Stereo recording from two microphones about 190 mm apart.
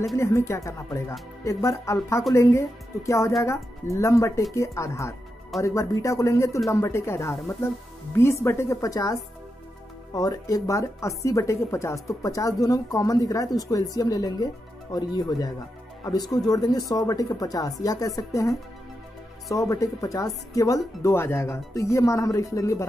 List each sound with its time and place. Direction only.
0.1 s a woman's voice: 15° left (ahead or behind)